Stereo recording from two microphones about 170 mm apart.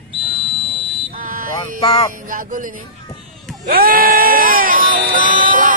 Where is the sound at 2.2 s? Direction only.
50° right (ahead or behind).